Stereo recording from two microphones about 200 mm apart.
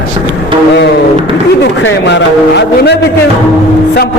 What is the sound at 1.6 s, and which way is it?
A man's voice, 65° left (ahead or behind).